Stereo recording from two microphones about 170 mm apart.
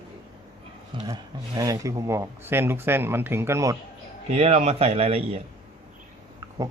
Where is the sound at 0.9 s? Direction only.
20° right (ahead or behind).